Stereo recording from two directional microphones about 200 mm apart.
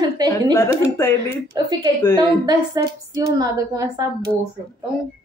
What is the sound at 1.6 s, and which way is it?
A woman's voice, 20° right (ahead or behind).